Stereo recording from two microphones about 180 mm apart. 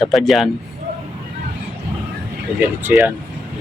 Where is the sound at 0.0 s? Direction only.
Centre (ahead or behind).